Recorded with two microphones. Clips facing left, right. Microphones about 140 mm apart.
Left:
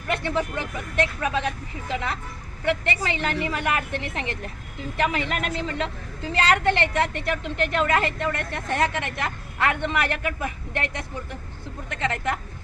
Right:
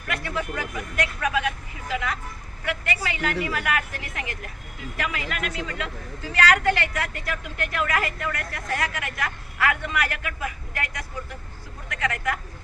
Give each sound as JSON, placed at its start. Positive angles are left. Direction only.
{"t": 0.1, "sound": "a woman's voice", "side_deg": 25}